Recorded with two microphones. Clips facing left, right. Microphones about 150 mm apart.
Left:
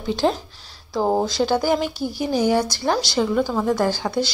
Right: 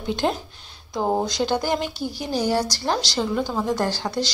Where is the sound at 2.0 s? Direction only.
45° left (ahead or behind).